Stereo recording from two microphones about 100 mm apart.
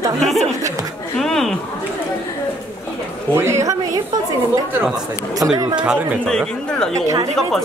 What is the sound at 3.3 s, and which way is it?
Speech, 25° right (ahead or behind).